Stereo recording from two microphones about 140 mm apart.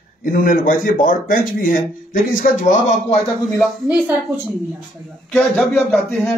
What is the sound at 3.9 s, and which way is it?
Speech, 10° right (ahead or behind).